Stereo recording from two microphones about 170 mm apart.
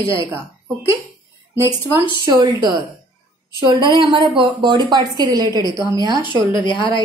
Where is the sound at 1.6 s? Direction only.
15° right (ahead or behind).